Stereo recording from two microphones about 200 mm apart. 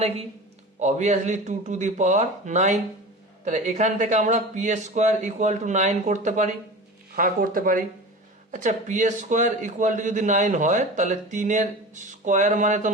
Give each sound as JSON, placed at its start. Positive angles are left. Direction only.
{"t": 0.8, "sound": "a man's voice", "side_deg": -35}